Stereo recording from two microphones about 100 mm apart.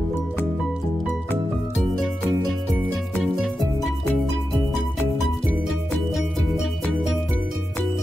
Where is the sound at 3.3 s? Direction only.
Centre (ahead or behind).